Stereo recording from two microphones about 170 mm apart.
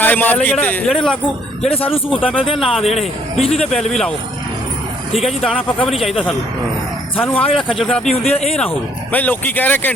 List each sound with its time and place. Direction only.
0.0 s a man's voice: 10° left (ahead or behind)
1.6 s speech: 35° left (ahead or behind)
2.7 s speech: centre (ahead or behind)
3.3 s speech: 35° left (ahead or behind)
3.7 s speech: 5° left (ahead or behind)
5.5 s speech: 5° right (ahead or behind)
7.2 s a man's voice: 10° left (ahead or behind)
7.5 s speech: centre (ahead or behind)
8.1 s speech: 40° left (ahead or behind)
9.1 s a man's voice: 10° left (ahead or behind)